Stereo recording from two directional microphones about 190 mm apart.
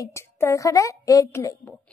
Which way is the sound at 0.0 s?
15° left (ahead or behind).